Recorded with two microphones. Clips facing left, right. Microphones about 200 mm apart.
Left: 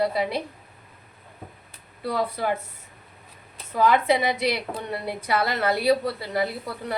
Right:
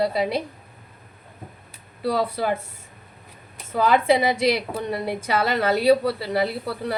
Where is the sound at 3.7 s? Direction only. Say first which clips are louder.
Right 2 dB; 30° right (ahead or behind).